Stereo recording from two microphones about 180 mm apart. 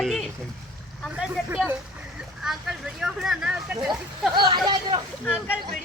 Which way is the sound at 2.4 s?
Centre (ahead or behind).